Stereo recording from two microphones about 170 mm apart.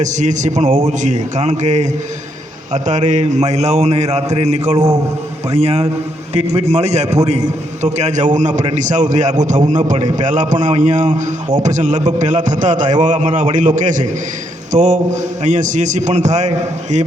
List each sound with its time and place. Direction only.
0.0 s a man's voice: 45° right (ahead or behind)